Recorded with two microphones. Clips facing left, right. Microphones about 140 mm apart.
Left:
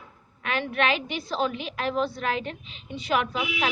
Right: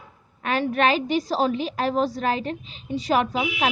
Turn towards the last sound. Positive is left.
turn(degrees=-35)  # may be behind; listen again after turning